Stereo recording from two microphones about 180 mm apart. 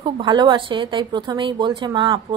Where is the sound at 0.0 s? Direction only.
25° right (ahead or behind).